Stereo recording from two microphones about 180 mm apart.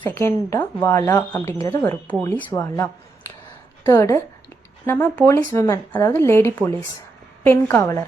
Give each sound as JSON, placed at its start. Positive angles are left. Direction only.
{"t": 0.1, "sound": "speech", "side_deg": 15}